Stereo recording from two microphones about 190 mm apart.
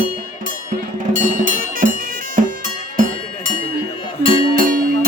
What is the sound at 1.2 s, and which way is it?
Music, 45° right (ahead or behind).